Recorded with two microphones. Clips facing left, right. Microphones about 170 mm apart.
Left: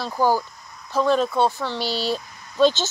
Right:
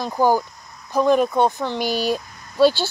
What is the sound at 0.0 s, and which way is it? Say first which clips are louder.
Speech: right 2 dB; 15° right (ahead or behind).